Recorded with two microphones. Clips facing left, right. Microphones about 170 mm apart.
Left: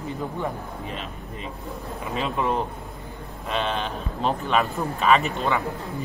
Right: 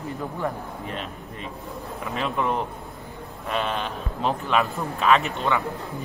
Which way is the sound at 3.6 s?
Centre (ahead or behind).